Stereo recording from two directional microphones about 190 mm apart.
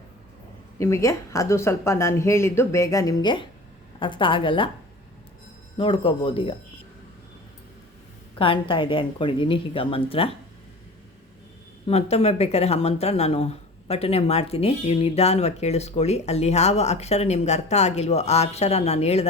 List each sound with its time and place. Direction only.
0.8 s speech: 15° left (ahead or behind)
5.7 s speech: 30° left (ahead or behind)
8.4 s speech: 25° left (ahead or behind)
11.9 s speech: 35° left (ahead or behind)